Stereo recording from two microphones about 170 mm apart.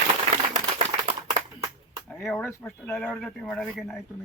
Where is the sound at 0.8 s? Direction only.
40° right (ahead or behind).